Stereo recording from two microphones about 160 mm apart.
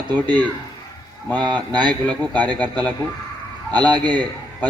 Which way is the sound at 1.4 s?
25° right (ahead or behind).